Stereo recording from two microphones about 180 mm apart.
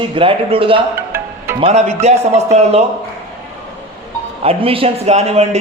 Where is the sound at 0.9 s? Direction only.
10° right (ahead or behind).